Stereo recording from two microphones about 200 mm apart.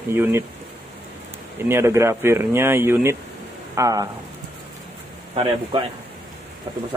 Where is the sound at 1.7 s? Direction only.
15° right (ahead or behind).